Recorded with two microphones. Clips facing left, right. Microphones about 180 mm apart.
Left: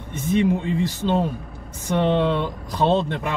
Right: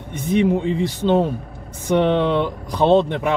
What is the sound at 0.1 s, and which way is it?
Speech, 15° right (ahead or behind).